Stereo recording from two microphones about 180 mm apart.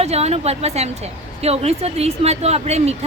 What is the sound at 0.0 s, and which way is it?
A woman's voice, 35° right (ahead or behind).